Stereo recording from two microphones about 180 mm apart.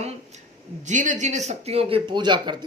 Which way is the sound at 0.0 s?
40° right (ahead or behind).